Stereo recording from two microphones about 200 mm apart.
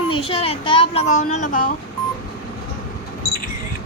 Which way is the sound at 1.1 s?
90° left.